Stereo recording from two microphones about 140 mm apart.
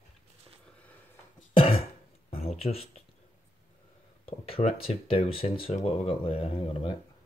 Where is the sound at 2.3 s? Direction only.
45° left (ahead or behind).